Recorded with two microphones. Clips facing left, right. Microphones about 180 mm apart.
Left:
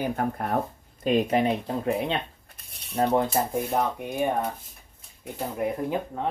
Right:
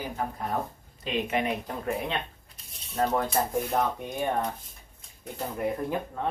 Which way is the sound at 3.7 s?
10° left (ahead or behind).